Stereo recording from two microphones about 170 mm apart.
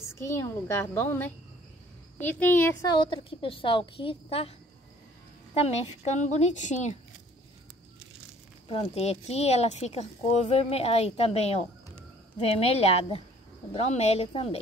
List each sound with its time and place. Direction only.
0.1 s a woman's voice: 15° left (ahead or behind)
2.8 s a woman's voice: 30° left (ahead or behind); by 7.0 s 45° left (ahead or behind)
8.6 s speech: 35° left (ahead or behind)